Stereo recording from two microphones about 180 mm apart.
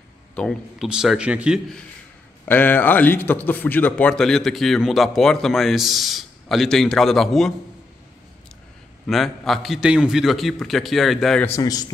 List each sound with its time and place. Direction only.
0.4 s a man's voice: centre (ahead or behind)
2.4 s a man's voice: 10° left (ahead or behind)
9.0 s a man's voice: centre (ahead or behind)
11.4 s a man's voice: 15° left (ahead or behind)